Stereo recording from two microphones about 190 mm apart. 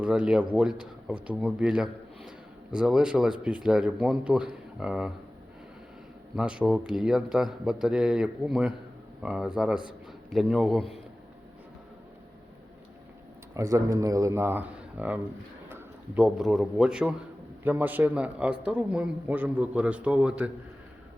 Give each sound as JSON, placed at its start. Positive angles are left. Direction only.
{"t": 0.0, "sound": "a man's voice", "side_deg": -5}
{"t": 6.3, "sound": "speech", "side_deg": -5}
{"t": 13.5, "sound": "a man's voice", "side_deg": -15}